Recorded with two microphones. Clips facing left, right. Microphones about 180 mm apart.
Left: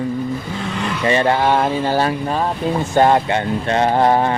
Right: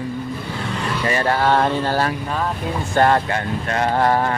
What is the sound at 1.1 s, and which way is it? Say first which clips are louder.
Vehicle: left 3 dB; 20° left (ahead or behind).